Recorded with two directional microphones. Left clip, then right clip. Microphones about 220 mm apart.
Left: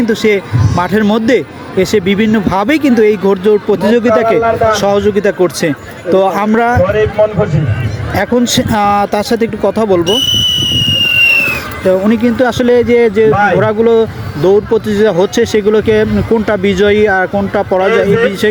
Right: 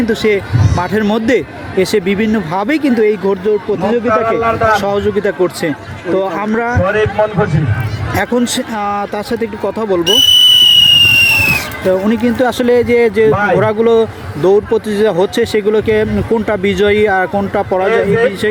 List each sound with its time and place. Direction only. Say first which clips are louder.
0.0 s speech: left 2 dB; 10° left (ahead or behind)
6.8 s a man's voice: left 2 dB; 50° right (ahead or behind)
8.1 s speech: left 3 dB; 5° left (ahead or behind)
10.2 s fireworks: right 5 dB; 35° right (ahead or behind)
11.9 s speech: left 3 dB; 10° left (ahead or behind)
13.3 s speech: left 2 dB; 25° left (ahead or behind)
13.6 s speech: left 1 dB; 5° left (ahead or behind)